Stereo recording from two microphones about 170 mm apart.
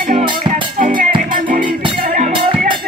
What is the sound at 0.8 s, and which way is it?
Music, 50° right (ahead or behind).